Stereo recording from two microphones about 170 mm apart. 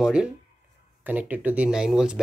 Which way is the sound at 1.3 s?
10° right (ahead or behind).